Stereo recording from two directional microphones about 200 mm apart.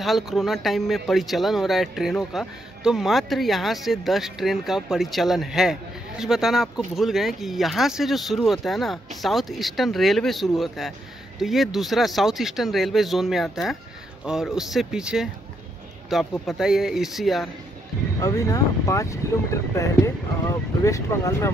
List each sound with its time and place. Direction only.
0.0 s speech: centre (ahead or behind)
18.2 s speech: 15° left (ahead or behind)